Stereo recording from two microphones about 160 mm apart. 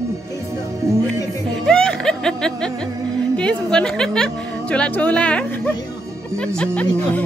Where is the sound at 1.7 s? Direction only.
5° left (ahead or behind).